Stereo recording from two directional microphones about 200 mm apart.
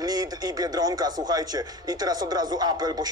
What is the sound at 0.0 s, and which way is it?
Speech, 20° right (ahead or behind).